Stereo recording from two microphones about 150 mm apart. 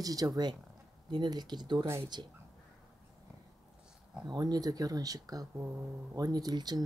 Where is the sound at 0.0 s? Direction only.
25° right (ahead or behind).